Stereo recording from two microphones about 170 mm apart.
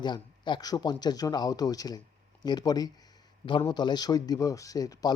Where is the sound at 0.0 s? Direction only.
25° left (ahead or behind).